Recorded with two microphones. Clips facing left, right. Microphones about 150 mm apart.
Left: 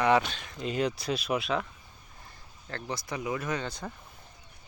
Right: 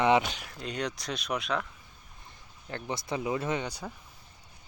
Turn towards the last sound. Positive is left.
turn(degrees=-10)  # may be behind; listen again after turning